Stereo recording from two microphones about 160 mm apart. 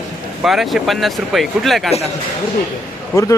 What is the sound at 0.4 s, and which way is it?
Speech, centre (ahead or behind).